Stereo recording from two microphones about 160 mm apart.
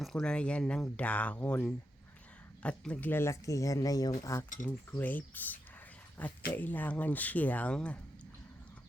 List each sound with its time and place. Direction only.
0.0 s speech: 5° left (ahead or behind)